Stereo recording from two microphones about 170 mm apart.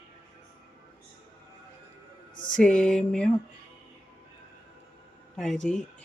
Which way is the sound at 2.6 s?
5° left (ahead or behind).